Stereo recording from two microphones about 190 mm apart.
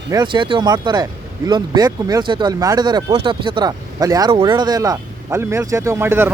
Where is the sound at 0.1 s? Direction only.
25° right (ahead or behind).